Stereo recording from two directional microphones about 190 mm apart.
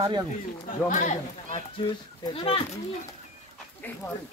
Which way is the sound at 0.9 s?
40° left (ahead or behind).